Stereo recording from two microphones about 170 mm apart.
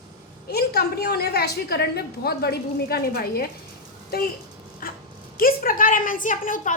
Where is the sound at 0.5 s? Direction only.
70° left (ahead or behind).